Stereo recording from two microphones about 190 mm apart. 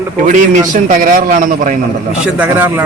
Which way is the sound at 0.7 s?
45° right (ahead or behind).